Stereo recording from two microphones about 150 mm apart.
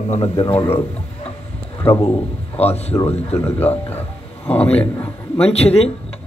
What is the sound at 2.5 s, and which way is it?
Speech, 45° left (ahead or behind).